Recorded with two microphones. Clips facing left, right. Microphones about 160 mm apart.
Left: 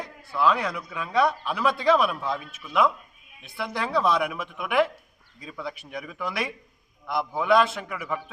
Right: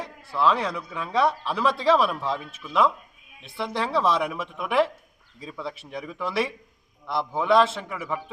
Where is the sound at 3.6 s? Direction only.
30° right (ahead or behind).